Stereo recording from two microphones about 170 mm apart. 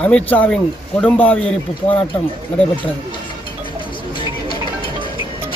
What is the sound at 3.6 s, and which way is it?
Music, 30° left (ahead or behind).